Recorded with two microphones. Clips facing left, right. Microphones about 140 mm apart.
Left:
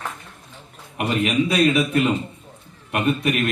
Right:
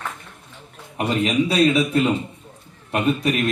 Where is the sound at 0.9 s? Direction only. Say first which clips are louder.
Right 1 dB; 35° right (ahead or behind).